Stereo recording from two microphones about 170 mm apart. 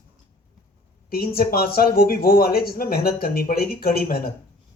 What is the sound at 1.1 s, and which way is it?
Speech, 60° left (ahead or behind).